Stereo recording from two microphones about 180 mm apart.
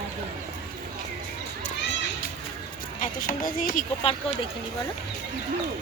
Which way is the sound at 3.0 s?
50° left (ahead or behind).